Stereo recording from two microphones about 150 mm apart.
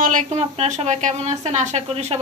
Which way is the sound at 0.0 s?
55° right (ahead or behind).